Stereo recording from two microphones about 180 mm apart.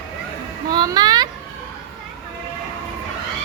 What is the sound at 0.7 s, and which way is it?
Speech, 20° right (ahead or behind).